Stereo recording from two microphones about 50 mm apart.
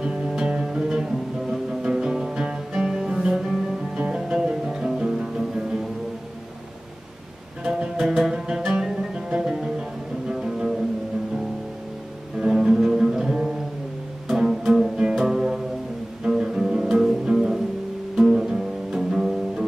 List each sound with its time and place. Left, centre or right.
0.3 s music: centre
7.6 s music: centre
12.4 s music: centre
14.7 s music: centre